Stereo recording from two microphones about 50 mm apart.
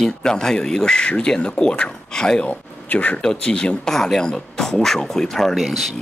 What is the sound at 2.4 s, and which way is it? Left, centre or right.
Speech, left.